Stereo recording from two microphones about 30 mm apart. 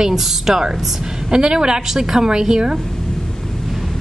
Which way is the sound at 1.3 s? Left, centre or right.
Right.